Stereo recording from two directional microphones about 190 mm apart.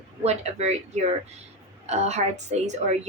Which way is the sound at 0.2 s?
35° right (ahead or behind).